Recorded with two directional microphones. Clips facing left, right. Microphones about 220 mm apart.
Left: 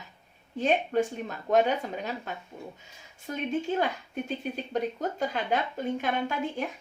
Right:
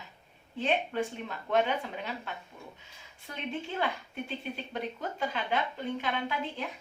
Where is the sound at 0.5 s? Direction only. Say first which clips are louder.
Left 5 dB; 45° left (ahead or behind).